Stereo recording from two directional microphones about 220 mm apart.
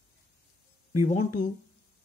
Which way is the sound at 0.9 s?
30° left (ahead or behind).